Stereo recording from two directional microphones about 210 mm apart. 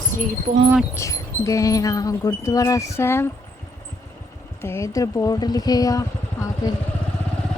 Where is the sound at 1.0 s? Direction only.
15° left (ahead or behind).